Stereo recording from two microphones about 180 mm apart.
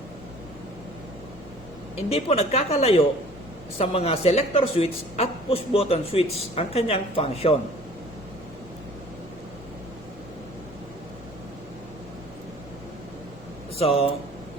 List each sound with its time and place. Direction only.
2.0 s a woman's voice: 35° left (ahead or behind)
13.7 s a woman's voice: 30° left (ahead or behind)